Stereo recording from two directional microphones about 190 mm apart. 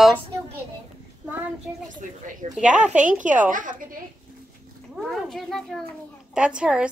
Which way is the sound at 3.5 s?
45° right (ahead or behind).